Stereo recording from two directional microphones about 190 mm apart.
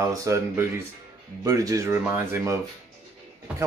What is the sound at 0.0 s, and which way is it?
Speech, 15° right (ahead or behind).